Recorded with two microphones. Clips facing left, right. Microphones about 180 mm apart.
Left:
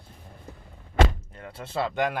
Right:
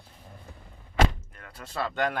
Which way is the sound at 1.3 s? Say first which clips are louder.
Left 4 dB; 25° left (ahead or behind).